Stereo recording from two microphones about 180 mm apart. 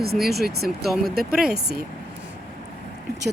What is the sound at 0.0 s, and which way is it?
Speech, 60° right (ahead or behind).